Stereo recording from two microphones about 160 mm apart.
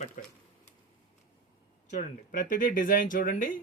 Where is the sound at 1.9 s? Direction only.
50° left (ahead or behind).